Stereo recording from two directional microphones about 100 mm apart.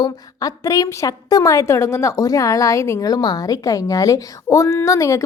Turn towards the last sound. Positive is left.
turn(degrees=30)  # may be behind; listen again after turning